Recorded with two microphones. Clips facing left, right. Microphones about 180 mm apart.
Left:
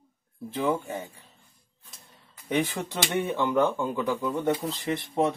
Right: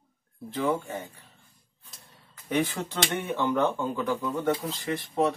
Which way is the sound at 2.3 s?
15° left (ahead or behind).